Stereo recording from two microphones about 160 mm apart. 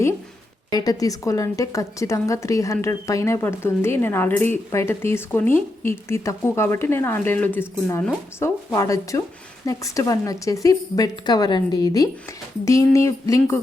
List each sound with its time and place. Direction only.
0.7 s a woman's voice: 25° left (ahead or behind)